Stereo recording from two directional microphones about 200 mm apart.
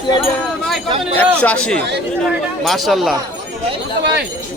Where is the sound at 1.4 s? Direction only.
5° left (ahead or behind).